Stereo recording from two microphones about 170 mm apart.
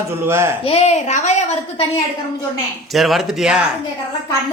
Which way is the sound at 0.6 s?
35° left (ahead or behind).